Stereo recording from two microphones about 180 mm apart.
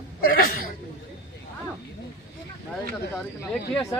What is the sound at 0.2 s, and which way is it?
Chuckle, 55° left (ahead or behind).